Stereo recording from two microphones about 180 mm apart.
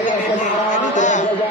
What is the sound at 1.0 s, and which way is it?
Speech, 45° left (ahead or behind).